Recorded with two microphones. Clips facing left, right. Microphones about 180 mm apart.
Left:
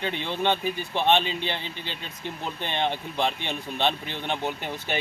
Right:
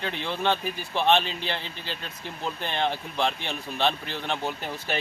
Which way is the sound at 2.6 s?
20° left (ahead or behind).